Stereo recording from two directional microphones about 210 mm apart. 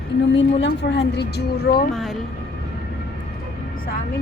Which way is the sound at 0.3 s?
55° left (ahead or behind).